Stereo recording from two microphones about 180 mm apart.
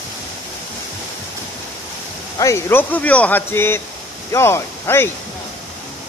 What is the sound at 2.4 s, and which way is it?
Speech, 15° left (ahead or behind).